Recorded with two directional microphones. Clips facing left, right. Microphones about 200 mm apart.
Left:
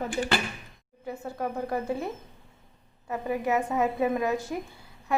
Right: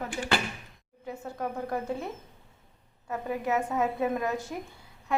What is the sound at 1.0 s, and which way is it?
Speech, 5° left (ahead or behind).